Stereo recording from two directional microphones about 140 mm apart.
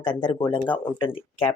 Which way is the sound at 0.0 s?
35° left (ahead or behind).